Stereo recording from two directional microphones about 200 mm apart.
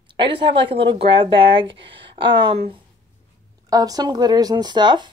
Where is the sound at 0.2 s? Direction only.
25° right (ahead or behind).